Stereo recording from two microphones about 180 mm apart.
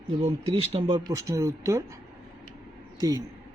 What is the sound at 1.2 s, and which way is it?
Speech, 15° right (ahead or behind).